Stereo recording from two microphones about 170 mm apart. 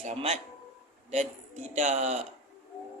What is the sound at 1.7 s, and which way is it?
Speech, 45° right (ahead or behind).